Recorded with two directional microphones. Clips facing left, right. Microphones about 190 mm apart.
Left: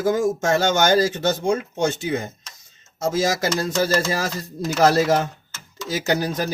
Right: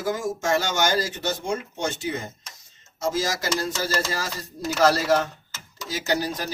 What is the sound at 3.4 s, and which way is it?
Speech, 55° left (ahead or behind).